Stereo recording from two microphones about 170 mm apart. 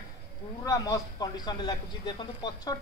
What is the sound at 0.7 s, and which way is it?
Speech, 20° left (ahead or behind).